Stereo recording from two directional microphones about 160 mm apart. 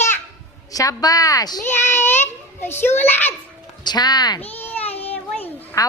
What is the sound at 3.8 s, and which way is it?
Speech, 25° left (ahead or behind).